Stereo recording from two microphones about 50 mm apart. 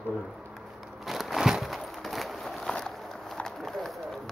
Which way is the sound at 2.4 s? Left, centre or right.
Centre.